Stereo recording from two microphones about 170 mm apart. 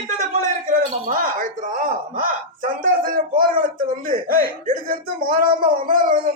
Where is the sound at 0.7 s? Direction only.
50° right (ahead or behind).